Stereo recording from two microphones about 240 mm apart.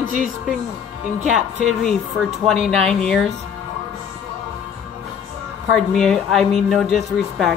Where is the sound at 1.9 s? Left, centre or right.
Centre.